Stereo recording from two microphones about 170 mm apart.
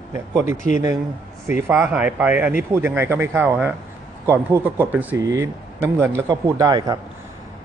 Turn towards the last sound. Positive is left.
turn(degrees=-20)  # may be behind; listen again after turning